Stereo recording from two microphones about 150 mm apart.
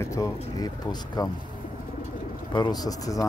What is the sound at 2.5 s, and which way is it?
Speech, 30° left (ahead or behind).